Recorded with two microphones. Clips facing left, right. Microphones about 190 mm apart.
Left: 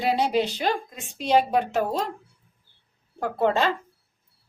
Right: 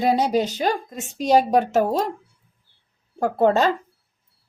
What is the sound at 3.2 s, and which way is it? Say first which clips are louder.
Speech: right 5 dB; 40° right (ahead or behind).